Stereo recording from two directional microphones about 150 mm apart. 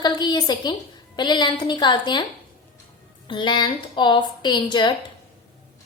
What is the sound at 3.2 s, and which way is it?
A woman's voice, 30° left (ahead or behind).